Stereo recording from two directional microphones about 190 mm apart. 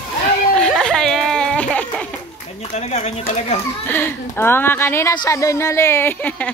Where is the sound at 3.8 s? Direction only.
10° left (ahead or behind).